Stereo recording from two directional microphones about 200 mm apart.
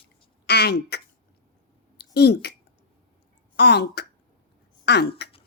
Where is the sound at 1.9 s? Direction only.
55° left (ahead or behind).